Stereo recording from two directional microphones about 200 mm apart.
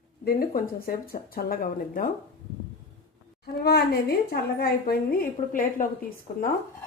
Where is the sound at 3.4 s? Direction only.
50° left (ahead or behind).